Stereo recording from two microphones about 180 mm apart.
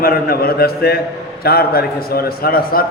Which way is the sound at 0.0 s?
55° left (ahead or behind).